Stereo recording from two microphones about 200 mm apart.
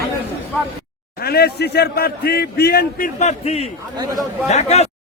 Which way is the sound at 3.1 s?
35° left (ahead or behind).